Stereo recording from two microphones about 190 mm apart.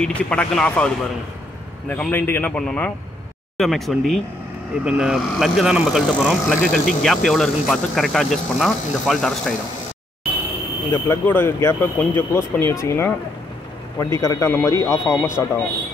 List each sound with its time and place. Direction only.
0.0 s speech: 5° left (ahead or behind)
10.9 s speech: 10° left (ahead or behind)